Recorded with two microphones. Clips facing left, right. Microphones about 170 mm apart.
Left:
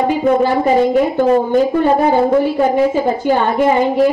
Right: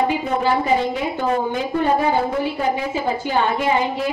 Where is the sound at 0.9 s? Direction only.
50° left (ahead or behind).